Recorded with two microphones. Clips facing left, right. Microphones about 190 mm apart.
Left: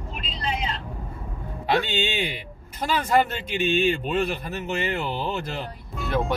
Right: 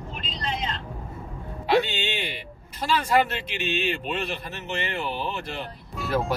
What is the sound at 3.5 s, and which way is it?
Speech, 45° left (ahead or behind).